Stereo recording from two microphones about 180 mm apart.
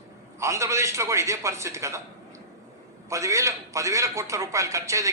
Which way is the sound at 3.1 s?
15° right (ahead or behind).